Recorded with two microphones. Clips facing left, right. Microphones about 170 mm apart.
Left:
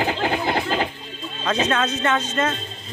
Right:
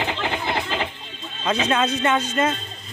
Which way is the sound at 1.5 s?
10° right (ahead or behind).